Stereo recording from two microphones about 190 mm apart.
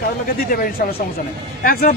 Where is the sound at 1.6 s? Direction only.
50° left (ahead or behind).